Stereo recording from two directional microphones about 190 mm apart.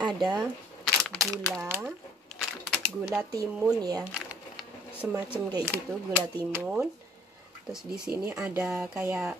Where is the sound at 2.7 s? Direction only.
Centre (ahead or behind).